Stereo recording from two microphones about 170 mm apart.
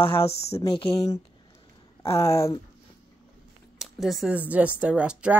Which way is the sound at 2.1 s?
15° left (ahead or behind).